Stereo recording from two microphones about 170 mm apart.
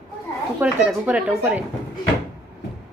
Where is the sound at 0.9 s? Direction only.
5° right (ahead or behind).